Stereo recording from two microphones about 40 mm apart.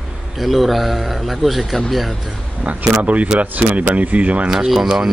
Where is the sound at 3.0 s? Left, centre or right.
Right.